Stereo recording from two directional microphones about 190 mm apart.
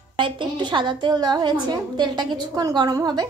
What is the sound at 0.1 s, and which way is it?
A woman's voice, 25° right (ahead or behind).